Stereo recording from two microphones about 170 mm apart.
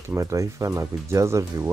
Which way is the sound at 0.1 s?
20° right (ahead or behind).